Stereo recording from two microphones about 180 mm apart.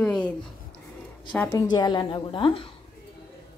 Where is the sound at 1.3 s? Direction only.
15° left (ahead or behind).